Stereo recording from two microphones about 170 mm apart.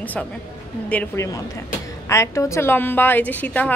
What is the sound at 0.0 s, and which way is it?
A woman's voice, 10° left (ahead or behind).